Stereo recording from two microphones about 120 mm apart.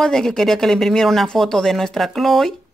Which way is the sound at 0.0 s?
5° left (ahead or behind).